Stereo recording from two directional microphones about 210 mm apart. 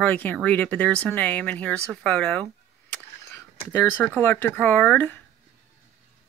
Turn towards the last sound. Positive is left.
turn(degrees=5)  # may be behind; listen again after turning